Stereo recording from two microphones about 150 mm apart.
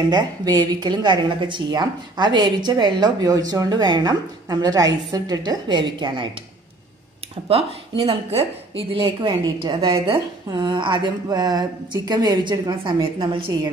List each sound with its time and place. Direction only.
0.1 s a woman's voice: 30° right (ahead or behind)
7.4 s speech: 40° right (ahead or behind)
9.0 s a woman's voice: 25° right (ahead or behind)